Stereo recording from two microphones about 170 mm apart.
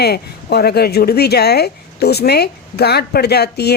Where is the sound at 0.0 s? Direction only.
70° left (ahead or behind).